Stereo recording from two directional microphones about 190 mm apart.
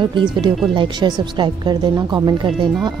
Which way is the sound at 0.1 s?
25° right (ahead or behind).